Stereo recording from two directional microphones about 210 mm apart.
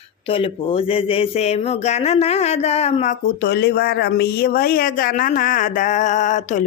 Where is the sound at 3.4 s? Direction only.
50° left (ahead or behind).